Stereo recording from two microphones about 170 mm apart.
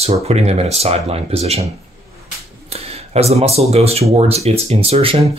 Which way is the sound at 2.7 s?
40° right (ahead or behind).